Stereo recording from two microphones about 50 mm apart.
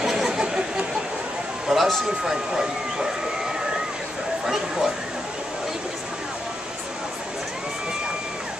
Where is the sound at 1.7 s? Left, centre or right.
Centre.